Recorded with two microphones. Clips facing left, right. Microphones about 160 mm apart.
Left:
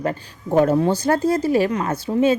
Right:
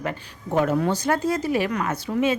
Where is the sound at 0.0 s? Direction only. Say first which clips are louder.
Left 5 dB; 35° left (ahead or behind).